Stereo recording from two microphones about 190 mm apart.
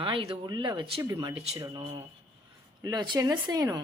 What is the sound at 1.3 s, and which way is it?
Speech, 35° right (ahead or behind).